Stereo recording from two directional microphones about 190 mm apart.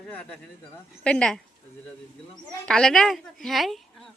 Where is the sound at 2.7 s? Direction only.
5° left (ahead or behind).